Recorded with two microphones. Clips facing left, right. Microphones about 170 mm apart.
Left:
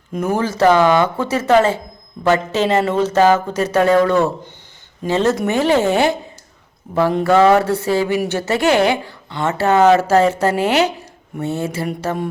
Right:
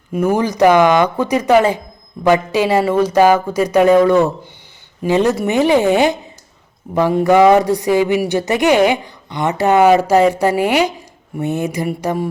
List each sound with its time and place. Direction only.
0.1 s speech: 10° right (ahead or behind)